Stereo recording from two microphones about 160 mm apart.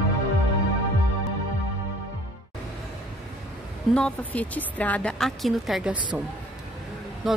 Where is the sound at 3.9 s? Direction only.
5° left (ahead or behind).